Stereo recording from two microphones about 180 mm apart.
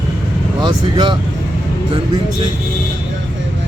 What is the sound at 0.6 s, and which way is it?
Speech, 25° right (ahead or behind).